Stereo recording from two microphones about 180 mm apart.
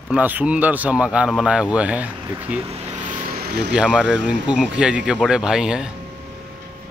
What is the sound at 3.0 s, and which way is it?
Vehicle, 50° right (ahead or behind).